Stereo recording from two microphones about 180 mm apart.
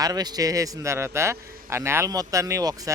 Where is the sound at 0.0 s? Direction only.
20° right (ahead or behind).